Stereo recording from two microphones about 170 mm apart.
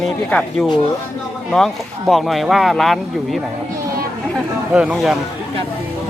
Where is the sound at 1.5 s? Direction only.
Centre (ahead or behind).